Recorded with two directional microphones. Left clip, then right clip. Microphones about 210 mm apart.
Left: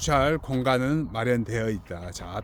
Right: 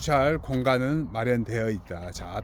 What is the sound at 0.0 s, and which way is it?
A man's voice, 10° left (ahead or behind).